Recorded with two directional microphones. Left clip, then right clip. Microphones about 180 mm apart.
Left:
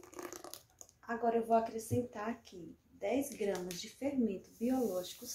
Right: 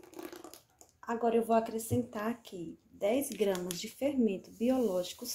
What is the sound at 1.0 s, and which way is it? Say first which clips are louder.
A woman's voice: right 4 dB; 40° right (ahead or behind).